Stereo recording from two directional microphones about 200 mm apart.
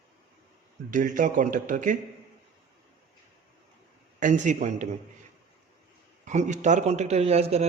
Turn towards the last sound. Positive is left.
turn(degrees=-30)  # may be behind; listen again after turning